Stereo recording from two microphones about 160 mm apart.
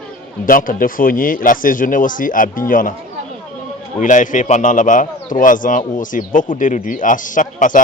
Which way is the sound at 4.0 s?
50° left (ahead or behind).